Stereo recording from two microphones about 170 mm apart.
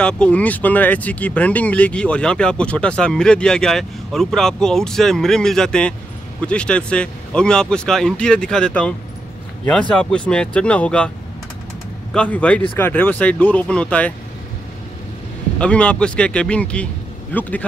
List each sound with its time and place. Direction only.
0.0 s speech: 5° left (ahead or behind)
12.1 s speech: 5° left (ahead or behind)
15.6 s speech: 5° left (ahead or behind)